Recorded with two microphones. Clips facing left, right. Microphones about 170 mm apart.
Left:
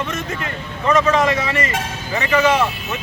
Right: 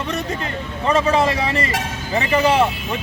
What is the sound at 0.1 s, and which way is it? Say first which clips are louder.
A man's voice: right 2 dB; 30° right (ahead or behind).